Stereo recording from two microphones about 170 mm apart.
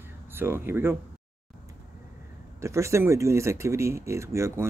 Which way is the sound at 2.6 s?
15° right (ahead or behind).